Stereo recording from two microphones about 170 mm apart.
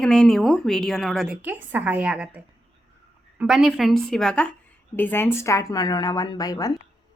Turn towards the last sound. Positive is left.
turn(degrees=20)  # may be behind; listen again after turning